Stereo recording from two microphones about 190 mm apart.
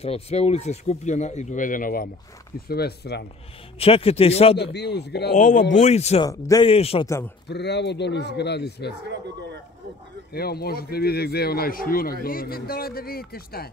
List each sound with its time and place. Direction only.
0.0 s speech: 30° left (ahead or behind); by 3.3 s 60° left (ahead or behind)
3.8 s speech: 30° left (ahead or behind)
4.6 s speech: 60° left (ahead or behind)
5.3 s speech: 40° left (ahead or behind)
6.2 s a man's voice: 20° left (ahead or behind)
6.7 s speech: 30° left (ahead or behind)
7.4 s speech: 65° left (ahead or behind)
10.3 s a man's voice: 55° left (ahead or behind)